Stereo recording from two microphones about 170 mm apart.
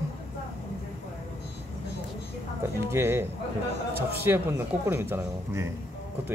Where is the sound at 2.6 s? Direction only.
15° right (ahead or behind).